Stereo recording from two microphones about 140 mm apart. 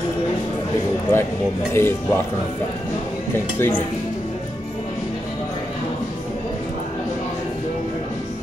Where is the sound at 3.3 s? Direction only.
15° left (ahead or behind).